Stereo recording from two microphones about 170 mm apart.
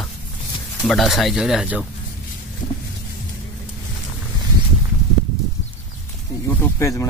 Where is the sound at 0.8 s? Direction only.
Centre (ahead or behind).